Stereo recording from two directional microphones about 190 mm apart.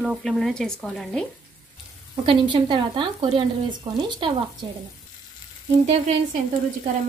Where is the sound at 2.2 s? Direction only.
25° right (ahead or behind).